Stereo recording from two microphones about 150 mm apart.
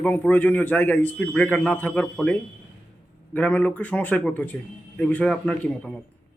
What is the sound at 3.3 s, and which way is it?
Speech, 10° left (ahead or behind).